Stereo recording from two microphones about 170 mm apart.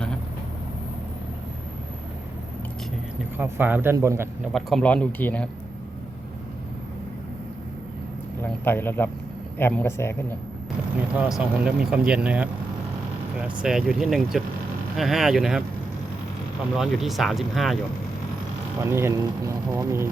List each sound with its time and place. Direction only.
3.3 s speech: 10° right (ahead or behind)
4.5 s speech: 5° left (ahead or behind)
8.4 s speech: 10° left (ahead or behind)
11.2 s speech: 5° right (ahead or behind)
16.7 s speech: centre (ahead or behind)
18.8 s speech: 15° right (ahead or behind)